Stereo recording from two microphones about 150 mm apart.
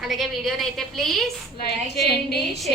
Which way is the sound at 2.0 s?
90° left.